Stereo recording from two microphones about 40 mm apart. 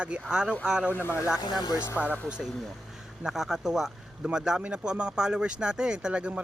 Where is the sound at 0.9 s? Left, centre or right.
Left.